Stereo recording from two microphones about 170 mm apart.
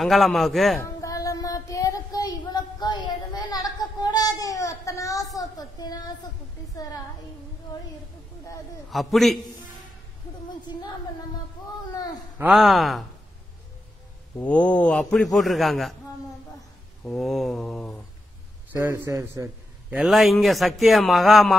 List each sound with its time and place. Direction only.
0.0 s a man's voice: centre (ahead or behind)
1.0 s child singing: 20° left (ahead or behind)
5.4 s a woman's voice: 20° left (ahead or behind)
8.9 s a man's voice: centre (ahead or behind)
12.4 s a man's voice: 5° right (ahead or behind)
14.4 s a man's voice: 10° left (ahead or behind)
17.0 s a man's voice: centre (ahead or behind)
18.7 s a man's voice: 15° right (ahead or behind)
20.0 s a man's voice: centre (ahead or behind)